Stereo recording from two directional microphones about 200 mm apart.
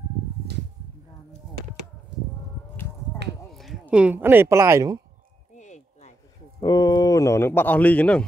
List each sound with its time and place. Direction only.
3.5 s speech: centre (ahead or behind); by 5.0 s 15° right (ahead or behind)
5.6 s a sound: 35° left (ahead or behind)
6.6 s a man's voice: 20° left (ahead or behind)